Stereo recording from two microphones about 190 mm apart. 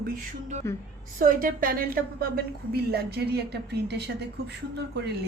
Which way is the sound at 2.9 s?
55° right (ahead or behind).